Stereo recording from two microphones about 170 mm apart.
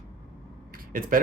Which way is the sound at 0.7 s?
55° right (ahead or behind).